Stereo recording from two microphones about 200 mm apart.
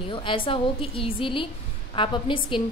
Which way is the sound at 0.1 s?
25° left (ahead or behind).